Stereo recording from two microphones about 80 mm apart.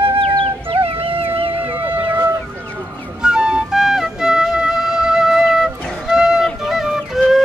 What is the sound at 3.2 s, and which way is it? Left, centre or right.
Flute, centre.